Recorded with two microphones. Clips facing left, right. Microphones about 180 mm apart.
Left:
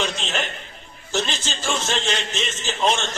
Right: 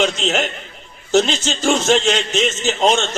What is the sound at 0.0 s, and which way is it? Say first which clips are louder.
Speech: right 8 dB; 75° right (ahead or behind).